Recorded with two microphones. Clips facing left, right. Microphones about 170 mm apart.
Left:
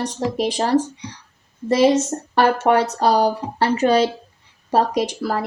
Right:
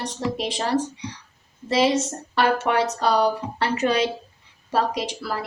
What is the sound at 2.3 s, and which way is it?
A woman's voice, 45° left (ahead or behind).